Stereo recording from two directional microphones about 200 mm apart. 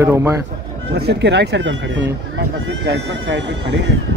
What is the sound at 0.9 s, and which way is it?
Speech, 55° right (ahead or behind).